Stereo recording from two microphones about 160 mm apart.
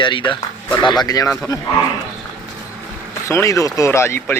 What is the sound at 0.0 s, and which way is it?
Speech, 30° left (ahead or behind).